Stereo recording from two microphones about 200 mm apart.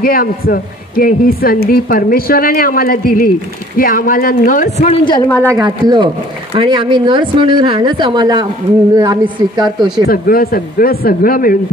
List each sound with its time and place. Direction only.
0.0 s a man's voice: 45° left (ahead or behind); by 5.4 s 20° left (ahead or behind)
5.5 s a woman's voice: 20° right (ahead or behind)
10.0 s a man's voice: 45° left (ahead or behind)